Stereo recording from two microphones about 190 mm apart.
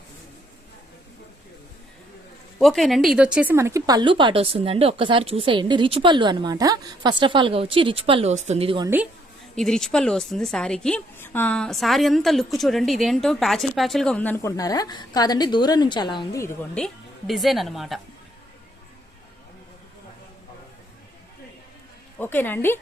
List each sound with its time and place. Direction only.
2.6 s speech: centre (ahead or behind); by 8.9 s 30° right (ahead or behind)
9.6 s a woman's voice: centre (ahead or behind)
16.7 s a woman's voice: centre (ahead or behind)
22.2 s speech: 10° left (ahead or behind)